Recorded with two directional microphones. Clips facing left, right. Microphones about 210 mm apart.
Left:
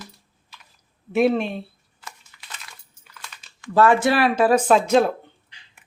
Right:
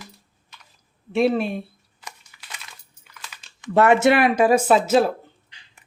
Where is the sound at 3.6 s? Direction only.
20° right (ahead or behind).